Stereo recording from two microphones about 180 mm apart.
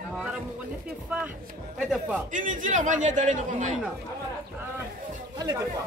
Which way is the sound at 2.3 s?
45° right (ahead or behind).